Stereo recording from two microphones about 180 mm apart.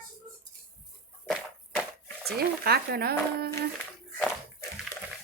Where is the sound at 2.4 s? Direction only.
60° right (ahead or behind).